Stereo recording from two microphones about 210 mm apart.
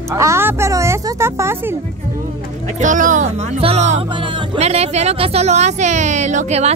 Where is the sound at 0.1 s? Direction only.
10° right (ahead or behind).